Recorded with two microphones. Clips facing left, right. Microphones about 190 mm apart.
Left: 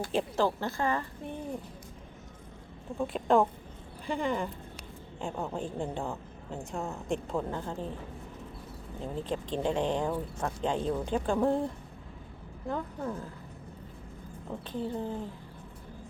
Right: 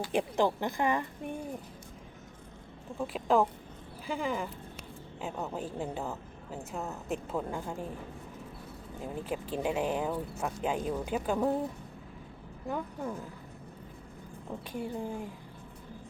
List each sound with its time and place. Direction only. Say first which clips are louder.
0.1 s speech: right 1 dB; 15° right (ahead or behind)
3.0 s speech: left 2 dB; centre (ahead or behind)
9.0 s speech: left 2 dB; 10° right (ahead or behind)
14.7 s speech: left 2 dB; 10° right (ahead or behind)